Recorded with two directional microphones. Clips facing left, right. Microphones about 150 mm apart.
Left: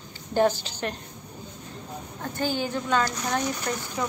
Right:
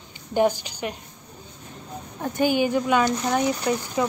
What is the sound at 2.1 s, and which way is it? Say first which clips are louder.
A woman's voice: right 7 dB; 15° right (ahead or behind).